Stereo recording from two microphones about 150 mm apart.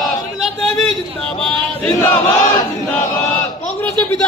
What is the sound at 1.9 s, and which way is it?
Speech, 15° left (ahead or behind).